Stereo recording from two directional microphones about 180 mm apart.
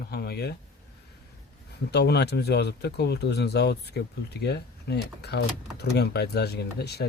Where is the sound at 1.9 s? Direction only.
65° left (ahead or behind).